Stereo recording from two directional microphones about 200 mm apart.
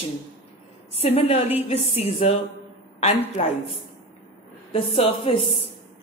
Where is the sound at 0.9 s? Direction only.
30° left (ahead or behind).